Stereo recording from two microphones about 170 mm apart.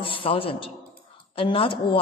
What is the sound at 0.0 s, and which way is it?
A man's voice, 30° left (ahead or behind).